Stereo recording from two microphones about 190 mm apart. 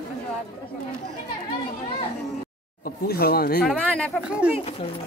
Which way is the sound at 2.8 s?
55° left (ahead or behind).